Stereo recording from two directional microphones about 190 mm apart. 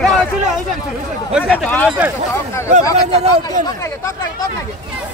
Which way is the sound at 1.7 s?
10° left (ahead or behind).